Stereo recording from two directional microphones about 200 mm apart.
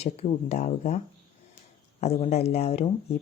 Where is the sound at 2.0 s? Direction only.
30° left (ahead or behind).